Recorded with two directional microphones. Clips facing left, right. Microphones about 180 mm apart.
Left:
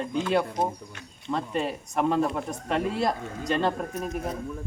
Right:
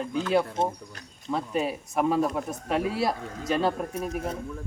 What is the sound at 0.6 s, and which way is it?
Speech, 25° right (ahead or behind).